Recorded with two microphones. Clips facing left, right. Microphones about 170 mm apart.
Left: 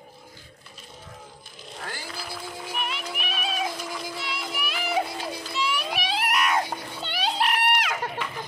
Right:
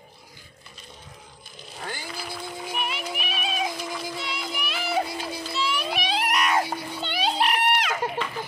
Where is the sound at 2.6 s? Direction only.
5° right (ahead or behind).